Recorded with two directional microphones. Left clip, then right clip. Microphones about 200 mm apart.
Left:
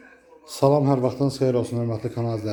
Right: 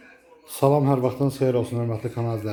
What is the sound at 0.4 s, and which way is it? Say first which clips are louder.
Speech: left 1 dB; centre (ahead or behind).